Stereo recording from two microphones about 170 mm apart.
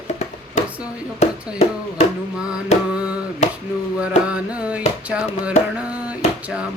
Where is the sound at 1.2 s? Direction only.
40° left (ahead or behind).